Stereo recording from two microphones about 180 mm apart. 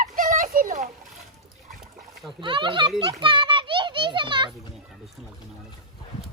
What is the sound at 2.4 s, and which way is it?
Speech, 25° right (ahead or behind).